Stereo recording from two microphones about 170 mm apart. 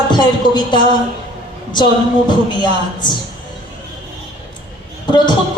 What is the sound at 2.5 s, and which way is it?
Speech, 25° left (ahead or behind).